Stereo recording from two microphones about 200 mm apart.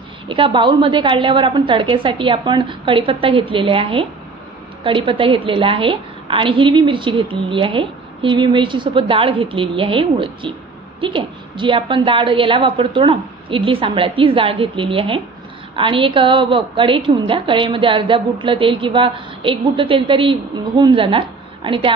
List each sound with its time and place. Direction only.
0.3 s a woman's voice: 25° right (ahead or behind)